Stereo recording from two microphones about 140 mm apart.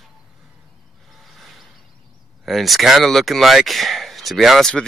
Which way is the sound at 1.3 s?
Centre (ahead or behind).